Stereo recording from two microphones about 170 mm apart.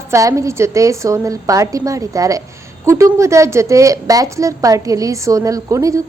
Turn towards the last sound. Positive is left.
turn(degrees=-20)  # may be behind; listen again after turning